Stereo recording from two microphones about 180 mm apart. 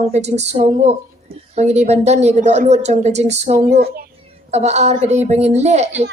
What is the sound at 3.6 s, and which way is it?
Speech, 65° right (ahead or behind).